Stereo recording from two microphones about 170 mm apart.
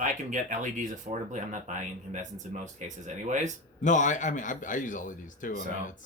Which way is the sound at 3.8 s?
45° left (ahead or behind).